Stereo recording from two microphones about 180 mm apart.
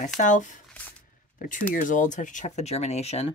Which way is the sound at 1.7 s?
45° left (ahead or behind).